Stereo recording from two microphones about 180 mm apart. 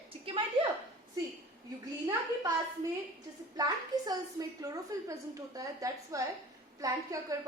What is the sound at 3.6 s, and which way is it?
A woman's voice, 20° right (ahead or behind).